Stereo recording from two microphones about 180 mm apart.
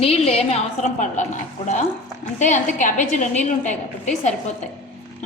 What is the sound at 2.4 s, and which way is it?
A woman's voice, 45° left (ahead or behind).